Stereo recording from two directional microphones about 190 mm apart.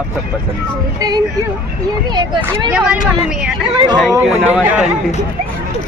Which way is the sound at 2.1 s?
25° right (ahead or behind).